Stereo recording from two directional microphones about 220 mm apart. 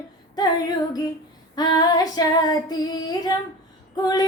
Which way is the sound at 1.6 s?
20° left (ahead or behind).